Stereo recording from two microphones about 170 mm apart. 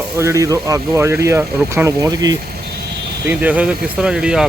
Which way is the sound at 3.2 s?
10° right (ahead or behind).